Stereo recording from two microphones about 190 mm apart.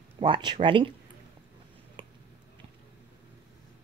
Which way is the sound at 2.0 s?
25° right (ahead or behind).